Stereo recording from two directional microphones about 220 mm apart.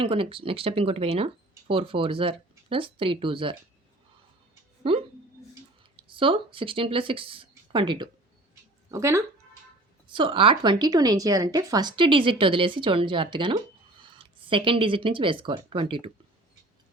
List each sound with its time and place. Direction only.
0.0 s speech: 25° right (ahead or behind)
4.8 s speech: 25° right (ahead or behind)